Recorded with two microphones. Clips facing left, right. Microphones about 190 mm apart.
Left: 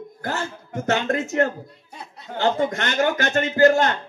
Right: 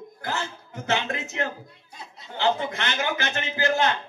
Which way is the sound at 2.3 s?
45° left (ahead or behind).